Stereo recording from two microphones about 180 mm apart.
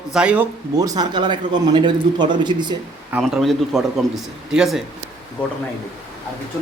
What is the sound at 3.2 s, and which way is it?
A man's voice, centre (ahead or behind).